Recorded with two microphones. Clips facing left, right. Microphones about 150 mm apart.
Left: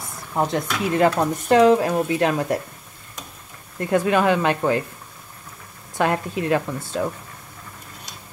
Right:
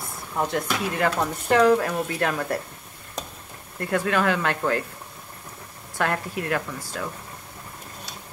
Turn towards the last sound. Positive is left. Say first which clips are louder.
# left 6 dB
turn(degrees=25)  # may be behind; listen again after turning